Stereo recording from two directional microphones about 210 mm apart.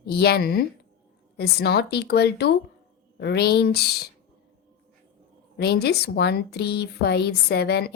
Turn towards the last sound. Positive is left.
turn(degrees=50)  # may be behind; listen again after turning